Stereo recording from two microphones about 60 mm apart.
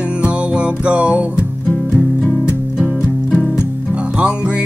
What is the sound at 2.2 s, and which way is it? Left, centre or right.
Music, left.